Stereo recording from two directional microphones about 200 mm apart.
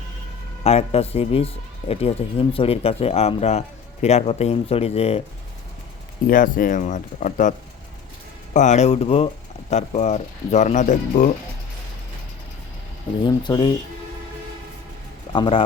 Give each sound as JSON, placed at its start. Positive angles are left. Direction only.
{"t": 0.6, "sound": "speech", "side_deg": 30}
{"t": 6.2, "sound": "speech", "side_deg": 45}
{"t": 8.5, "sound": "speech", "side_deg": 35}
{"t": 13.2, "sound": "speech", "side_deg": 20}
{"t": 15.3, "sound": "speech", "side_deg": 25}